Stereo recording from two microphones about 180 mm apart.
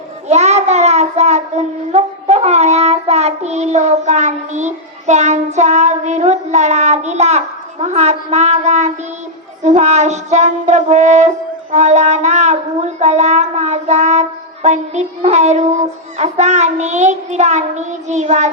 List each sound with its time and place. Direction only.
0.3 s child singing: 40° right (ahead or behind)